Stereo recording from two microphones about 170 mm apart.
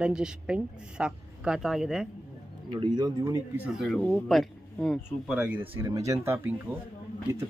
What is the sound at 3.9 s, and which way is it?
Speech, 15° left (ahead or behind).